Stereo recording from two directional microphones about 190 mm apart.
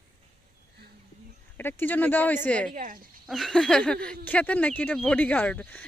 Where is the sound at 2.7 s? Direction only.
45° right (ahead or behind).